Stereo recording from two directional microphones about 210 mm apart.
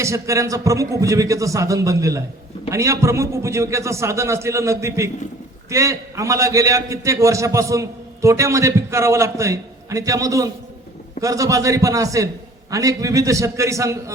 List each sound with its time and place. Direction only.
0.0 s a man's voice: 15° right (ahead or behind)